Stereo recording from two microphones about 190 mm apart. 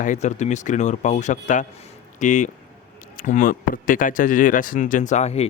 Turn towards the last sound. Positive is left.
turn(degrees=35)  # may be behind; listen again after turning